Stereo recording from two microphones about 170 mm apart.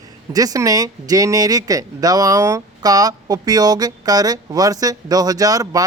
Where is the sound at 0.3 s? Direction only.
20° right (ahead or behind).